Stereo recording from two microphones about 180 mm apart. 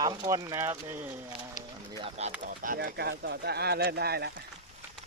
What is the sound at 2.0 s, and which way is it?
Speech, 35° right (ahead or behind).